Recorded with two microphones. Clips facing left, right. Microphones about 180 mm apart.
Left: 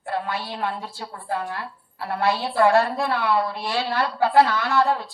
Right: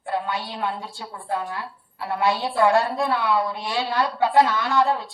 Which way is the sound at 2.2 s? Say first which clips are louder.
Left 1 dB; 20° right (ahead or behind).